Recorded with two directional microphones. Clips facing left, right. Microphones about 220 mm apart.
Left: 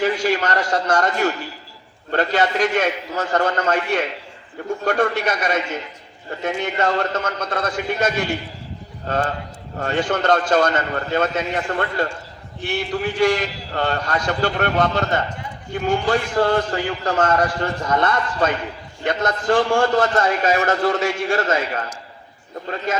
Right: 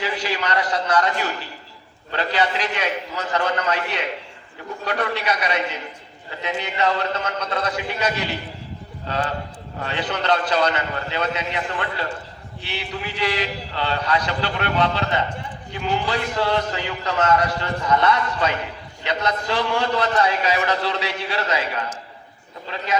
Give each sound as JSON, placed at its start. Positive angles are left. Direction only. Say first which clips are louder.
{"t": 0.0, "sound": "a man's voice", "louder": "left 6 dB", "side_deg": 45}
{"t": 22.9, "sound": "a man's voice", "louder": "right 1 dB", "side_deg": 45}